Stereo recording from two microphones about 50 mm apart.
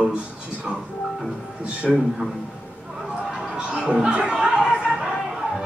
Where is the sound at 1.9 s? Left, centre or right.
Centre.